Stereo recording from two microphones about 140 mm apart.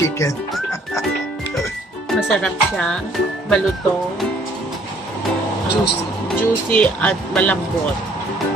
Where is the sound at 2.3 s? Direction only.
5° left (ahead or behind).